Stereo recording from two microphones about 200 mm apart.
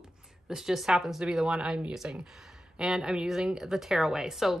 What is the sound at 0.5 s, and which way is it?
A woman's voice, centre (ahead or behind).